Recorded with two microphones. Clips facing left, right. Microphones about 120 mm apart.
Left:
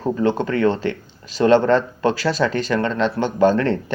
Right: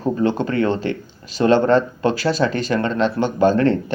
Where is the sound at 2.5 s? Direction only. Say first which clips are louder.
Even; 35° left (ahead or behind).